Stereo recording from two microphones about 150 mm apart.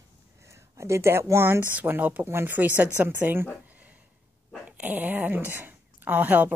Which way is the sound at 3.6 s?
10° right (ahead or behind).